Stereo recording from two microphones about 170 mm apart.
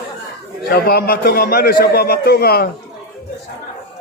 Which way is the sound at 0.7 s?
70° left (ahead or behind).